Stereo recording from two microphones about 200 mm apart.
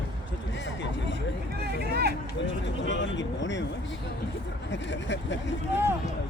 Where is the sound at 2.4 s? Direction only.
65° left (ahead or behind).